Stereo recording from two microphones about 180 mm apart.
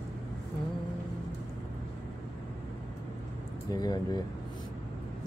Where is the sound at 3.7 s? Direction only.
20° left (ahead or behind).